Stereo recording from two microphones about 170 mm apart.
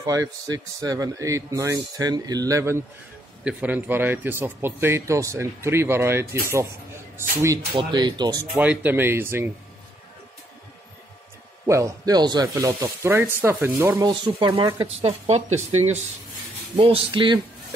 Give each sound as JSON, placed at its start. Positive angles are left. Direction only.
{"t": 0.0, "sound": "speech", "side_deg": -20}
{"t": 7.7, "sound": "speech", "side_deg": -25}
{"t": 8.5, "sound": "speech", "side_deg": -10}
{"t": 11.6, "sound": "speech", "side_deg": -15}